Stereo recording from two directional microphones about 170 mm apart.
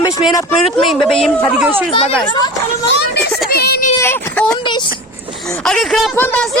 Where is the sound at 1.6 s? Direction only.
10° right (ahead or behind).